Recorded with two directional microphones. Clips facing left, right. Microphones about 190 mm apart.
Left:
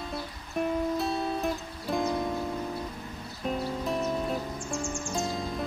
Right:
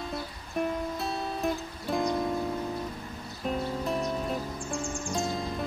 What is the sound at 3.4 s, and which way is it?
Music, centre (ahead or behind).